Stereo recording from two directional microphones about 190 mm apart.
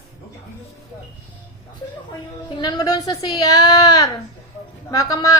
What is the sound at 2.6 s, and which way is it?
A woman's voice, 20° left (ahead or behind).